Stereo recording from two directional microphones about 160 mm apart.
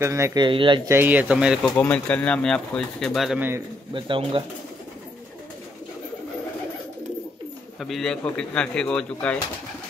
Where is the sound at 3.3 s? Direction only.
15° right (ahead or behind).